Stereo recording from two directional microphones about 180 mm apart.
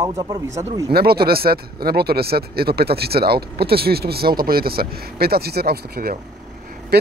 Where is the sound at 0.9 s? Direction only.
60° right (ahead or behind).